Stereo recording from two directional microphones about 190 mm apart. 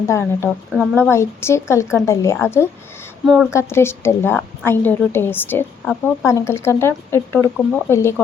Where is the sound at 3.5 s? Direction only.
15° left (ahead or behind).